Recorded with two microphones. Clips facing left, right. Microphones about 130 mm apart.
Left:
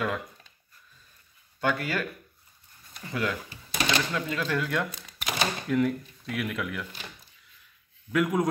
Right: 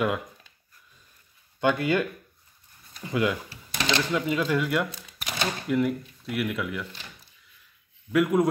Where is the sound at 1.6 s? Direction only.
20° right (ahead or behind); by 6.8 s centre (ahead or behind).